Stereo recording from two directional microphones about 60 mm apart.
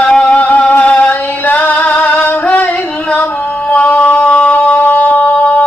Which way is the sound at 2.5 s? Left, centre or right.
Left.